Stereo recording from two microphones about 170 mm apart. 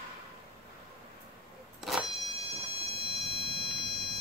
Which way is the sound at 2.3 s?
35° right (ahead or behind).